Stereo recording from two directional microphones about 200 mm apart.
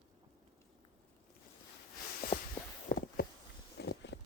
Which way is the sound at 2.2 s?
50° left (ahead or behind).